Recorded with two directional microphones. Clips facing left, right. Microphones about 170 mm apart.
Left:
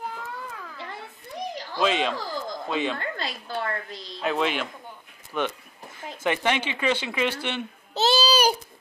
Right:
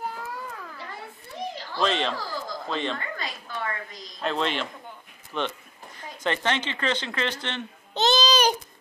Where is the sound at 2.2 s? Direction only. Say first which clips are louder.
Left 2 dB; 20° left (ahead or behind).